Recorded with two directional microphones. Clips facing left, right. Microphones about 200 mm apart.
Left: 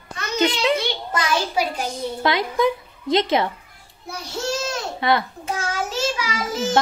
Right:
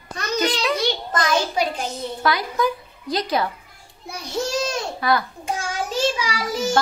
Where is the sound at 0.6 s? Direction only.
25° left (ahead or behind).